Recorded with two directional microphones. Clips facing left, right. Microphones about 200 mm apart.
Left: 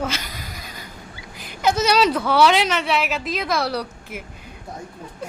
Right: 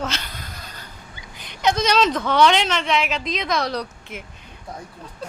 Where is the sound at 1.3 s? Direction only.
5° left (ahead or behind).